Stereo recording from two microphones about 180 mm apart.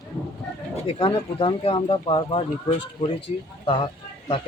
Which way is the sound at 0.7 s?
30° left (ahead or behind).